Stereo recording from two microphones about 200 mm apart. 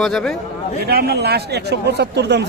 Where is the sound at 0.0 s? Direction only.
Centre (ahead or behind).